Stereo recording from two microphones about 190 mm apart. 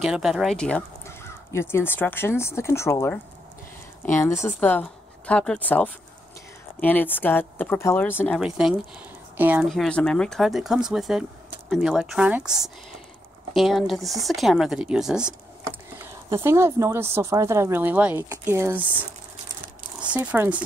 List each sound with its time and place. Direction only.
0.0 s speech: centre (ahead or behind)
8.4 s speech: 5° right (ahead or behind)
9.7 s speech: 5° left (ahead or behind)
16.0 s speech: 15° right (ahead or behind)